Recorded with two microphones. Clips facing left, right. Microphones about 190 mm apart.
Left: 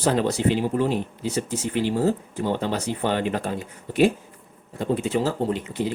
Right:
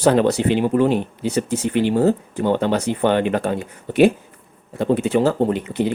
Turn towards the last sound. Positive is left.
turn(degrees=-65)  # may be behind; listen again after turning